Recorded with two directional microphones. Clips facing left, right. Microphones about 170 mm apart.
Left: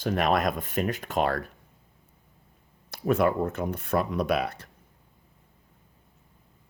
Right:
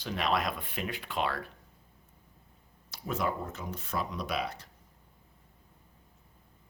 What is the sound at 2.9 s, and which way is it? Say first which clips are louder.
Speech: left 9 dB; 60° left (ahead or behind).